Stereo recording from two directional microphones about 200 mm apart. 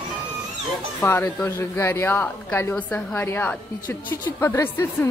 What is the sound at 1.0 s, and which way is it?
A woman's voice, 10° left (ahead or behind).